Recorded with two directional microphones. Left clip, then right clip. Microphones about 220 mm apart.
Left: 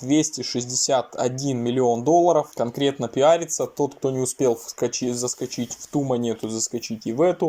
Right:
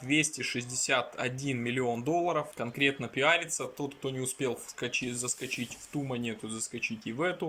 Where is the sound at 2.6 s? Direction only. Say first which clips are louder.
Left 7 dB; 5° left (ahead or behind).